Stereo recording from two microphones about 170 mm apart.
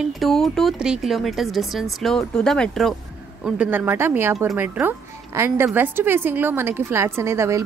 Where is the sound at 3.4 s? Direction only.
10° right (ahead or behind).